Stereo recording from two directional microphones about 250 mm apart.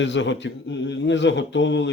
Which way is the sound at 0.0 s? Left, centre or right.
Left.